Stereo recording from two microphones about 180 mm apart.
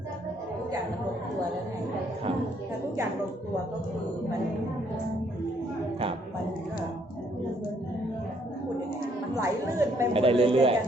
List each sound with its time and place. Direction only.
9.3 s a woman's voice: 15° right (ahead or behind)
10.1 s a man's voice: 30° right (ahead or behind)